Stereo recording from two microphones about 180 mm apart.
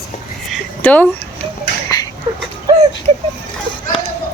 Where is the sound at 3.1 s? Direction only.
40° right (ahead or behind).